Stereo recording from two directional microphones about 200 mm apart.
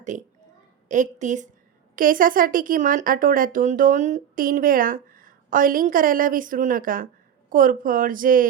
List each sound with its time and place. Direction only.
0.0 s a child's voice: 35° right (ahead or behind)